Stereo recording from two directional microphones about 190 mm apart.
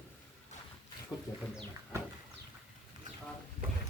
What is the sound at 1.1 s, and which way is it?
Wild animals, 20° left (ahead or behind).